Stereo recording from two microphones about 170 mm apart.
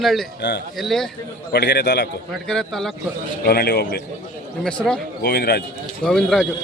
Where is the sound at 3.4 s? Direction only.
65° left (ahead or behind).